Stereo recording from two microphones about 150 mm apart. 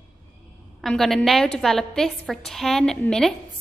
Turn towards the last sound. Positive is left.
turn(degrees=5)  # may be behind; listen again after turning